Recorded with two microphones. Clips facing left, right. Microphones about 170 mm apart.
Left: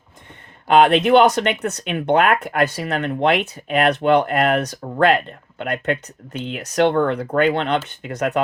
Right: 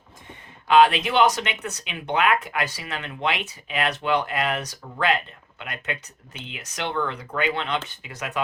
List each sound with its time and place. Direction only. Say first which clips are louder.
0.9 s speech: left 7 dB; 50° left (ahead or behind)